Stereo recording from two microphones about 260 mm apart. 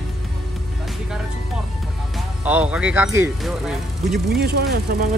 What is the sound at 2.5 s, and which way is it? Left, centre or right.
Speech, centre.